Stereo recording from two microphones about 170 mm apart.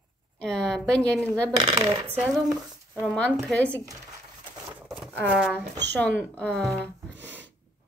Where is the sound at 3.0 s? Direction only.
5° left (ahead or behind).